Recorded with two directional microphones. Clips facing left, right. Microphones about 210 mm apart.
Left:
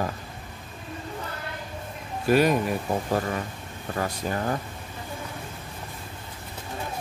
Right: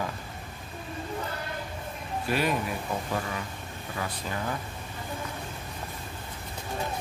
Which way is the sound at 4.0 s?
45° left (ahead or behind).